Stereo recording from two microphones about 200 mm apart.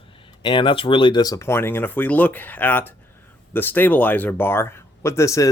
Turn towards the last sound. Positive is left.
turn(degrees=15)  # may be behind; listen again after turning